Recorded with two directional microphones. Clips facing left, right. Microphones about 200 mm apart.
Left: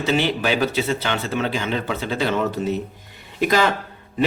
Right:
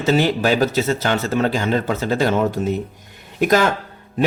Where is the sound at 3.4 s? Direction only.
50° right (ahead or behind).